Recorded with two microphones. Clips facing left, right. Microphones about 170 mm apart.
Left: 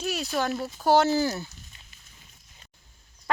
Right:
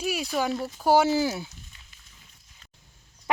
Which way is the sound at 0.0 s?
10° right (ahead or behind).